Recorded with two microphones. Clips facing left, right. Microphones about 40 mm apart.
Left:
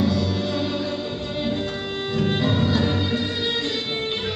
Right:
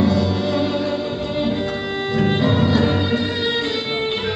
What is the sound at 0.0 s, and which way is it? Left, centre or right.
Music, centre.